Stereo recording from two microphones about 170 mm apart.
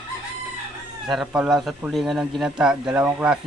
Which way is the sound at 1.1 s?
5° right (ahead or behind).